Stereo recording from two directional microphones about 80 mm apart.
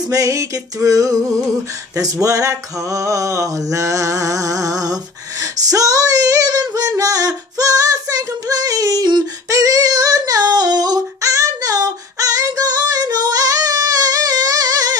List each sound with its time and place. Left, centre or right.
0.1 s female singing: right
9.5 s female singing: right
11.1 s female singing: right